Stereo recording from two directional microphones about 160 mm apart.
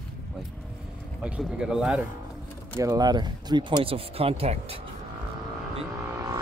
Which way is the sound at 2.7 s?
20° right (ahead or behind).